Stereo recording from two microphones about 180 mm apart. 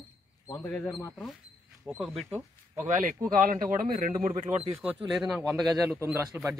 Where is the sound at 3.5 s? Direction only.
50° right (ahead or behind).